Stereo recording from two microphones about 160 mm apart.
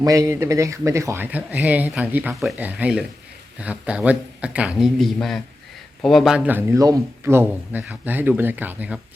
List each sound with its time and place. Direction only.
0.0 s speech: 20° right (ahead or behind)